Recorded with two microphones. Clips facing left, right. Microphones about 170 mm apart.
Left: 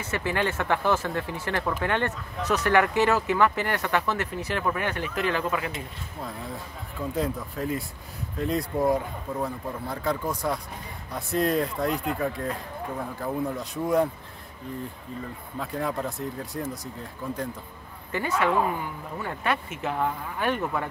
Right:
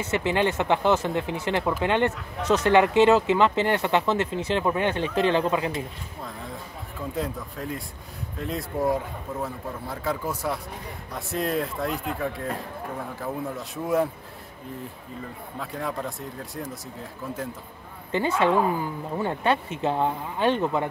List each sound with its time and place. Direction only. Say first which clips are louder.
0.1 s speech: right 3 dB; 20° right (ahead or behind)
7.2 s a man's voice: left 2 dB; centre (ahead or behind)
15.6 s a man's voice: left 2 dB; centre (ahead or behind)
18.1 s speech: right 3 dB; 25° right (ahead or behind)